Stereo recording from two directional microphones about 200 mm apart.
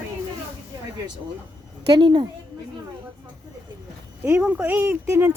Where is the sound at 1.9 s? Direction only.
25° right (ahead or behind).